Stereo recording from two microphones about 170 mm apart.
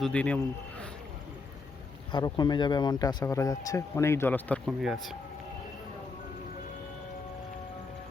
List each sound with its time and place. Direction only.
0.0 s speech: 5° left (ahead or behind)
2.1 s speech: 25° left (ahead or behind); by 5.1 s centre (ahead or behind)